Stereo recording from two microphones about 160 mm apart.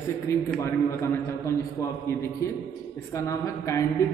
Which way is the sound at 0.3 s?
15° left (ahead or behind).